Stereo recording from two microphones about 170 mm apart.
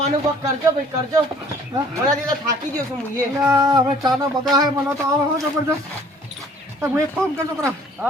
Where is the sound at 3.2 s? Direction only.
20° right (ahead or behind).